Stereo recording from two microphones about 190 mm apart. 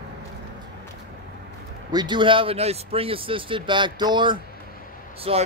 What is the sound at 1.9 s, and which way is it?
Speech, 25° right (ahead or behind).